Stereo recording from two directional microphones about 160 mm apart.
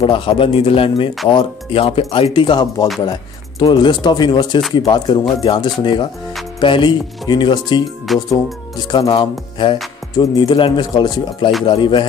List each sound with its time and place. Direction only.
0.0 s speech: 30° left (ahead or behind)
8.1 s speech: centre (ahead or behind)
8.7 s speech: 25° left (ahead or behind)